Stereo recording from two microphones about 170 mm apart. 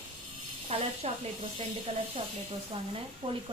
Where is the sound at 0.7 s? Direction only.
35° right (ahead or behind).